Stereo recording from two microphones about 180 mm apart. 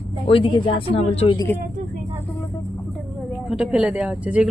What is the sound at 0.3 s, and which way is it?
A woman's voice, 30° left (ahead or behind).